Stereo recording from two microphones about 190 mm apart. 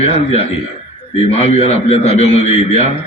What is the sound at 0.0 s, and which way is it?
A man's voice, 30° left (ahead or behind).